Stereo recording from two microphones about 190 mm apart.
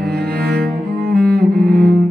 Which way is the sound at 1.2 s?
5° left (ahead or behind).